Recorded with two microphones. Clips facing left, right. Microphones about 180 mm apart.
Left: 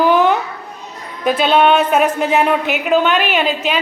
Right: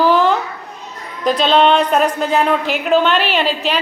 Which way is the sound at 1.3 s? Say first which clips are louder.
Even; 5° left (ahead or behind).